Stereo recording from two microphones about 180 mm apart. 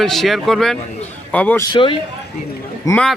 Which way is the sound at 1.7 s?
30° left (ahead or behind).